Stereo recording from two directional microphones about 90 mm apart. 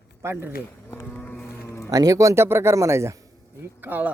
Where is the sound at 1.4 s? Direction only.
30° left (ahead or behind).